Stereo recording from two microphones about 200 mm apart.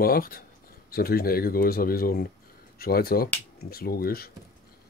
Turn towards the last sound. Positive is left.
turn(degrees=50)  # may be behind; listen again after turning